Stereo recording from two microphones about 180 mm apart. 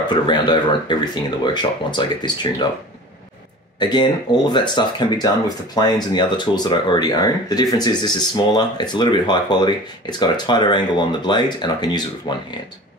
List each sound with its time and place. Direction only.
0.1 s speech: 25° left (ahead or behind)
3.8 s speech: 25° left (ahead or behind)